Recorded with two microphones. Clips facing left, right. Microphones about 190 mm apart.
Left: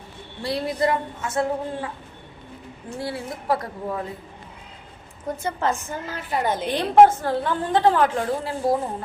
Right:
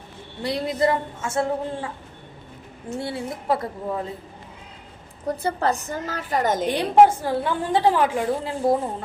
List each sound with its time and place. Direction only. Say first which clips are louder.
0.4 s a woman's voice: right 1 dB; 20° right (ahead or behind)
3.0 s a woman's voice: left 1 dB; 25° right (ahead or behind)
5.2 s a woman's voice: right 2 dB; 35° right (ahead or behind)
6.7 s a woman's voice: left 2 dB; 10° right (ahead or behind)